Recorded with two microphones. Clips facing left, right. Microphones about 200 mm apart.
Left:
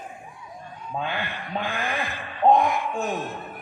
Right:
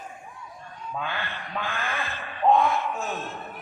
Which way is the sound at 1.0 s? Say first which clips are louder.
Left 3 dB; 15° left (ahead or behind).